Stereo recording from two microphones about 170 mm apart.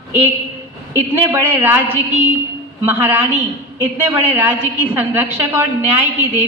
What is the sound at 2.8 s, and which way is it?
A woman's voice, 15° right (ahead or behind).